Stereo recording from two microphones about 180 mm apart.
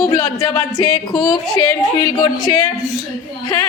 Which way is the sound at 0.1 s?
20° left (ahead or behind).